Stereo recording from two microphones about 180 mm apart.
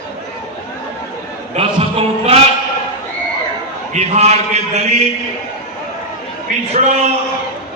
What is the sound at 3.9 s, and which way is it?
Speech, 35° right (ahead or behind).